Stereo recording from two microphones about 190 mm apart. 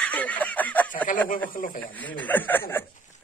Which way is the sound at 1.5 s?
45° left (ahead or behind).